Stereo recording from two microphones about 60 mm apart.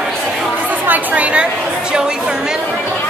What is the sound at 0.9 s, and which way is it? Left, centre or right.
Speech, right.